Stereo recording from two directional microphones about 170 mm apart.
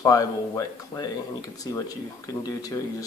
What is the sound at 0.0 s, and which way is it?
Speech, 20° left (ahead or behind).